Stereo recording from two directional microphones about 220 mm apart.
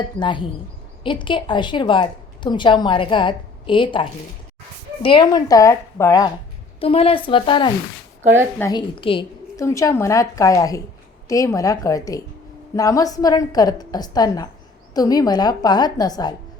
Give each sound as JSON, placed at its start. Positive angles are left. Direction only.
{"t": 0.2, "sound": "a woman's voice", "side_deg": 20}